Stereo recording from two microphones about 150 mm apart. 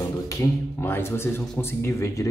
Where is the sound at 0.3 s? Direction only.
15° left (ahead or behind).